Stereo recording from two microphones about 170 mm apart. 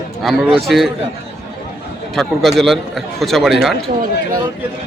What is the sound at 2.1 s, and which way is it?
A man's voice, centre (ahead or behind).